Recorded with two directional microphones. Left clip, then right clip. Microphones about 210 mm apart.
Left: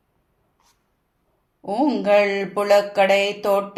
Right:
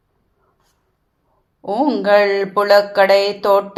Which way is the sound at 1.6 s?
10° right (ahead or behind).